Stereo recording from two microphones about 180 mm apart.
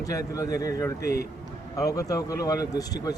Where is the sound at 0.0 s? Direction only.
20° left (ahead or behind).